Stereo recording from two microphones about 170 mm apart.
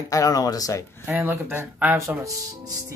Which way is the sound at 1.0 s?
15° right (ahead or behind).